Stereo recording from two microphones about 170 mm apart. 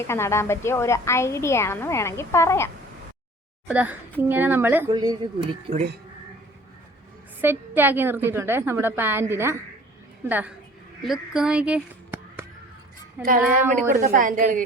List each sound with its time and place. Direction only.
0.0 s a woman's voice: 15° left (ahead or behind)
3.7 s a woman's voice: 10° right (ahead or behind)
4.9 s speech: 25° right (ahead or behind)
7.4 s a woman's voice: 10° right (ahead or behind)
13.7 s a woman's voice: 50° right (ahead or behind)